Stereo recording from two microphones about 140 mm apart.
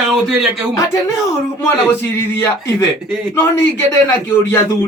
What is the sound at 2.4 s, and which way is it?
Speech, 20° left (ahead or behind).